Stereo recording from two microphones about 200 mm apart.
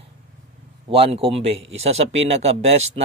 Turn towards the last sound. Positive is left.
turn(degrees=-30)  # may be behind; listen again after turning